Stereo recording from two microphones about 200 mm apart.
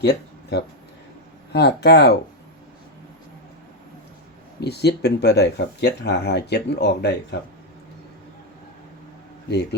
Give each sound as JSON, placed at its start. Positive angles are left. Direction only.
{"t": 0.0, "sound": "a sound", "side_deg": 55}
{"t": 1.5, "sound": "speech", "side_deg": 55}
{"t": 4.6, "sound": "speech", "side_deg": 55}